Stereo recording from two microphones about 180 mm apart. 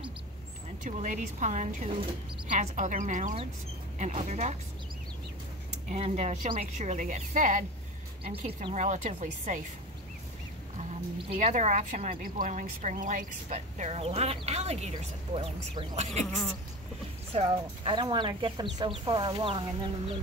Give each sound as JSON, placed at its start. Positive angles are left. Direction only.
{"t": 0.8, "sound": "a woman's voice", "side_deg": -45}
{"t": 5.9, "sound": "a woman's voice", "side_deg": -35}
{"t": 10.9, "sound": "speech", "side_deg": -40}
{"t": 17.3, "sound": "speech", "side_deg": -30}